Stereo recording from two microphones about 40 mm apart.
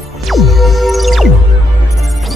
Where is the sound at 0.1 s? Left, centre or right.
Centre.